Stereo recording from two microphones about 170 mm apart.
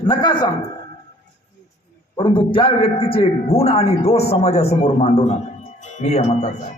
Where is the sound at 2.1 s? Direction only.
30° left (ahead or behind).